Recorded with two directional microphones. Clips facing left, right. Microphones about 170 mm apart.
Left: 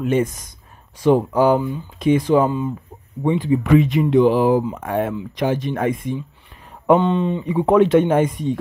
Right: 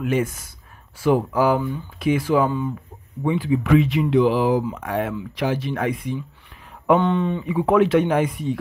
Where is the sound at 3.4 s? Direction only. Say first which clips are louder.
Left 2 dB; 40° left (ahead or behind).